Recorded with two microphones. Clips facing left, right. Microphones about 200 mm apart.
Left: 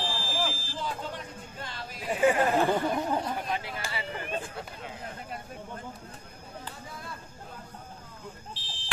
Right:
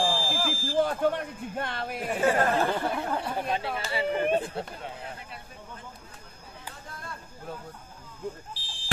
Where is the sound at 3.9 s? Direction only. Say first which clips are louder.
Right 11 dB; 20° right (ahead or behind).